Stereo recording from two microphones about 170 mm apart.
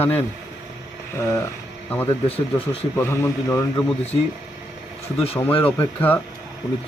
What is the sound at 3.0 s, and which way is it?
Speech, 15° left (ahead or behind).